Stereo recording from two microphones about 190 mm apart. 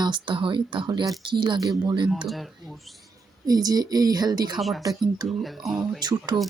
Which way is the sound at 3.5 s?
20° right (ahead or behind).